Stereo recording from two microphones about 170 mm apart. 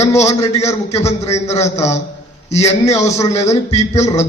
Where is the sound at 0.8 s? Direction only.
40° left (ahead or behind).